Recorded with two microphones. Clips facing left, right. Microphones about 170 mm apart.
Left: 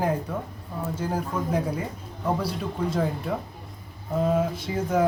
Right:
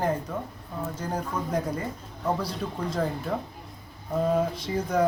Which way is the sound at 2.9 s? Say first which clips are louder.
Left 1 dB; 5° left (ahead or behind).